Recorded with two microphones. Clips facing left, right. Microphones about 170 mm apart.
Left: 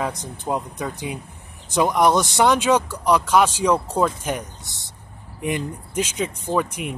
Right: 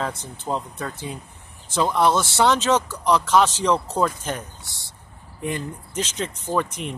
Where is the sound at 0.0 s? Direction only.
15° left (ahead or behind).